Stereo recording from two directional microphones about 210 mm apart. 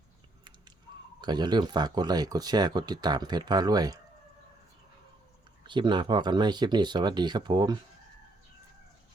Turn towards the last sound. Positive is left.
turn(degrees=-20)  # may be behind; listen again after turning